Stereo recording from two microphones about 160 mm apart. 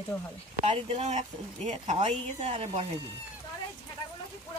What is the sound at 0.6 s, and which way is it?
A woman's voice, 35° right (ahead or behind).